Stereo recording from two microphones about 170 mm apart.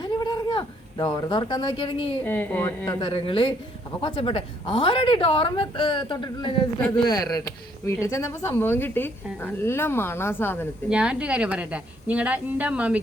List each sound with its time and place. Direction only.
0.0 s a sound: 25° left (ahead or behind)
2.2 s speech: 10° left (ahead or behind)
3.0 s a woman's voice: 30° left (ahead or behind); by 10.7 s 15° left (ahead or behind)
10.8 s a woman's voice: 5° right (ahead or behind)